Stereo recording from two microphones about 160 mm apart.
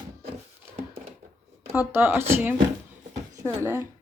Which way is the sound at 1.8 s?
15° right (ahead or behind).